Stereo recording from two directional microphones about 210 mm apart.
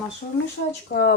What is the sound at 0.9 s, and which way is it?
Speech, 50° left (ahead or behind).